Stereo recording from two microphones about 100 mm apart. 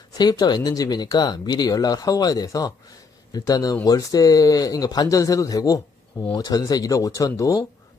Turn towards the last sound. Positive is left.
turn(degrees=35)  # may be behind; listen again after turning